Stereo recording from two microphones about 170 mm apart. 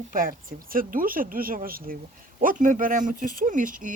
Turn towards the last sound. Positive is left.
turn(degrees=-50)  # may be behind; listen again after turning